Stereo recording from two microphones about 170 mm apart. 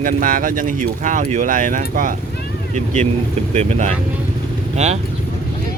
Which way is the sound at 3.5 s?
40° right (ahead or behind).